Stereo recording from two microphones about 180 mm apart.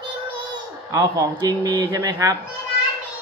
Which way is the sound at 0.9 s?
20° right (ahead or behind).